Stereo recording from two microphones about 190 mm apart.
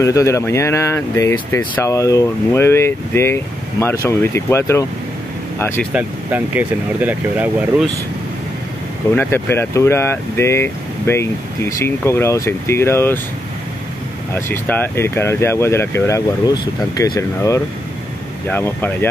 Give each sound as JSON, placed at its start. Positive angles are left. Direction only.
{"t": 0.0, "sound": "speech", "side_deg": 15}
{"t": 5.9, "sound": "speech", "side_deg": -10}
{"t": 9.1, "sound": "speech", "side_deg": 10}
{"t": 14.3, "sound": "speech", "side_deg": 10}